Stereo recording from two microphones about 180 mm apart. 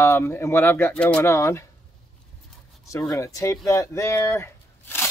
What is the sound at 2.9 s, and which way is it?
Speech, 15° left (ahead or behind).